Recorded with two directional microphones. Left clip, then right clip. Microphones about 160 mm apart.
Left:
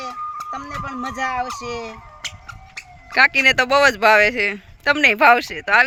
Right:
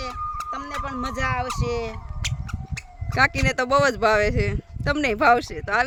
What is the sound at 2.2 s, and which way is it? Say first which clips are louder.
Mouse: even; 35° left (ahead or behind).